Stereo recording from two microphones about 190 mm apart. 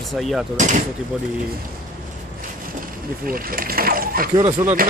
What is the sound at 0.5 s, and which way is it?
Speech, 40° right (ahead or behind).